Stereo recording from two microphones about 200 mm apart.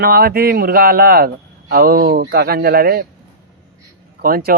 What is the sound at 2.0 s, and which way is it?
Speech, 70° right (ahead or behind).